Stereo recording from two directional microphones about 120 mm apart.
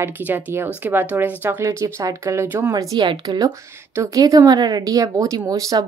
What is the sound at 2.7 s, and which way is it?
Speech, 35° right (ahead or behind).